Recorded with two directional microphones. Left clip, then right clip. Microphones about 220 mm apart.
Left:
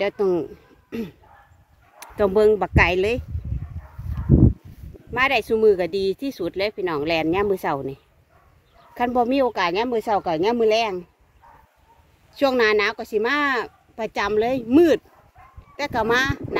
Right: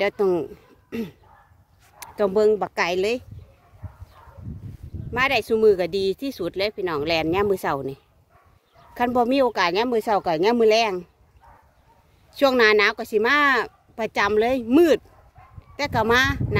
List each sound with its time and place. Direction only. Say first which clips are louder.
0.0 s speech: even; 10° right (ahead or behind)
5.1 s speech: left 1 dB; 5° right (ahead or behind)
12.4 s speech: right 2 dB; 15° right (ahead or behind)